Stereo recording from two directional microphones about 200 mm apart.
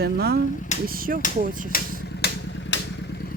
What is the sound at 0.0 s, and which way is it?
Speech, 55° right (ahead or behind).